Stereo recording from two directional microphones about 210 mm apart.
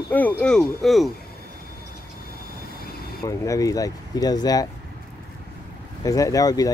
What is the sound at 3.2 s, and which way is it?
Speech, 15° left (ahead or behind).